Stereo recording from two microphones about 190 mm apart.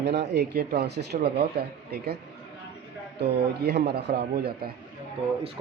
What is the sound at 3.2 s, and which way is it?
Speech, 60° right (ahead or behind).